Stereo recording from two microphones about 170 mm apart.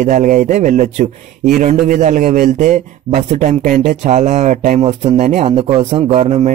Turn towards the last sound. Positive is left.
turn(degrees=-40)  # may be behind; listen again after turning